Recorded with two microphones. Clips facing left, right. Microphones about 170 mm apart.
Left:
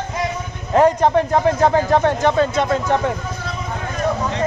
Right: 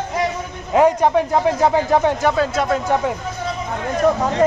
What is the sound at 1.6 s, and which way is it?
Speech, 15° right (ahead or behind).